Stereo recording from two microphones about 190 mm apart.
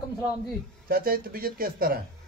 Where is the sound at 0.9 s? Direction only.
50° right (ahead or behind).